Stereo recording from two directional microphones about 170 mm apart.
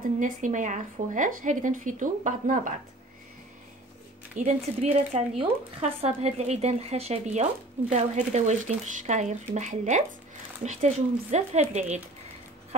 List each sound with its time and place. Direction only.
0.2 s speech: 45° right (ahead or behind)
4.4 s speech: 50° right (ahead or behind)
4.8 s speech: 35° right (ahead or behind)